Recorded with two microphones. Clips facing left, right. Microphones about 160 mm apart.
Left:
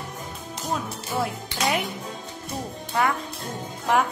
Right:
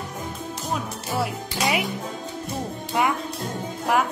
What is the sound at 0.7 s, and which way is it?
Music, 5° right (ahead or behind).